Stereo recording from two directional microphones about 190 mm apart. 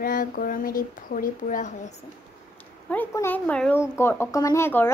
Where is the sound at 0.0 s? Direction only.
45° left (ahead or behind).